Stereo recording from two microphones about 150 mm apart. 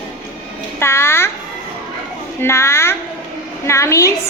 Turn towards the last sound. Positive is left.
turn(degrees=20)  # may be behind; listen again after turning